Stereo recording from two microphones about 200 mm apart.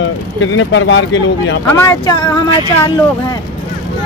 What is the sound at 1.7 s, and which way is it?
Speech, 15° left (ahead or behind).